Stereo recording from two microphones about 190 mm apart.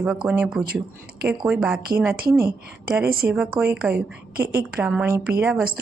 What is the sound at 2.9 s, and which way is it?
Speech, 10° right (ahead or behind).